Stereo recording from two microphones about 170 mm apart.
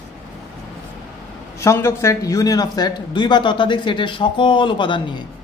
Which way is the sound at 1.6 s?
15° left (ahead or behind).